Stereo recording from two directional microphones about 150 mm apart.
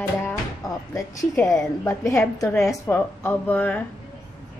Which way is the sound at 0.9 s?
20° left (ahead or behind).